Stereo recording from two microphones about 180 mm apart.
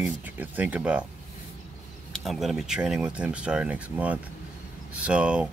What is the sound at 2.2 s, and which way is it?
Speech, centre (ahead or behind).